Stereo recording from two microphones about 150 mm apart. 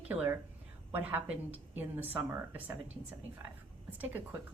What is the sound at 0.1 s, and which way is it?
Speech, 15° right (ahead or behind).